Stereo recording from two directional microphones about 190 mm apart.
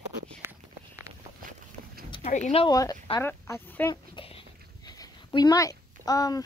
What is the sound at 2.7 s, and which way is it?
Speech, 20° left (ahead or behind).